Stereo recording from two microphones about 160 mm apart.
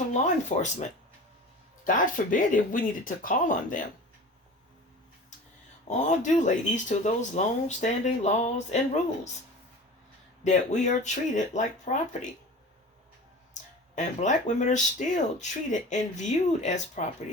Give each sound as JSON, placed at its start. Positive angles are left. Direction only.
{"t": 0.1, "sound": "speech", "side_deg": 45}
{"t": 5.9, "sound": "speech", "side_deg": 50}
{"t": 10.4, "sound": "speech", "side_deg": 45}
{"t": 13.5, "sound": "speech", "side_deg": 50}